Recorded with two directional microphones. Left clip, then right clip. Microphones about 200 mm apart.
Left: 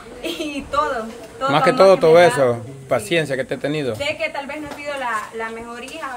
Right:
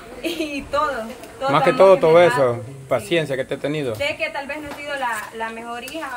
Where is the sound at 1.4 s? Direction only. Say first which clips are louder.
Left 1 dB; 10° left (ahead or behind).